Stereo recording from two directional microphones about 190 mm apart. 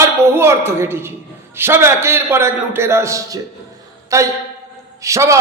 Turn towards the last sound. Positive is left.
turn(degrees=-15)  # may be behind; listen again after turning